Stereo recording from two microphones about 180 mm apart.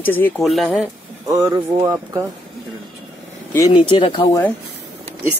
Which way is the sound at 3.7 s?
25° left (ahead or behind).